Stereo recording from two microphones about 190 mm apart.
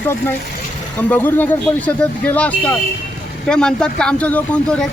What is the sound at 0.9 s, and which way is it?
A man's voice, 10° left (ahead or behind).